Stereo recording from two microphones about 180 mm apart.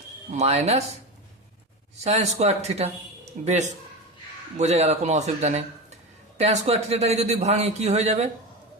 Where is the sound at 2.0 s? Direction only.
35° right (ahead or behind).